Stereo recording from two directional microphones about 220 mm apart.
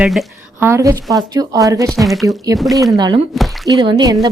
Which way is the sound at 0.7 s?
15° right (ahead or behind).